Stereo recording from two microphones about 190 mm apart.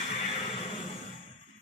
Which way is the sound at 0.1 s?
30° left (ahead or behind).